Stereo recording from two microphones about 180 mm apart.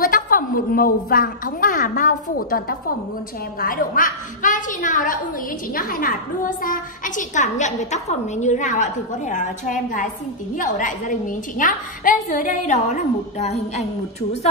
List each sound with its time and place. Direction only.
0.0 s a woman's voice: 50° left (ahead or behind)